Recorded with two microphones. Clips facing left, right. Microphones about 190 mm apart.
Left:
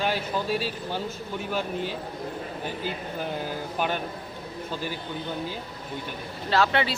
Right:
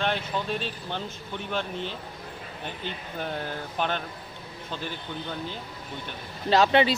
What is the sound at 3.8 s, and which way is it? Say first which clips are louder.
Speech: left 1 dB; 10° left (ahead or behind).